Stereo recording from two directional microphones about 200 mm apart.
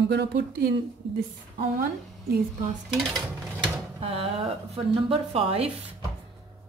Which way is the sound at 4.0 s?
30° right (ahead or behind).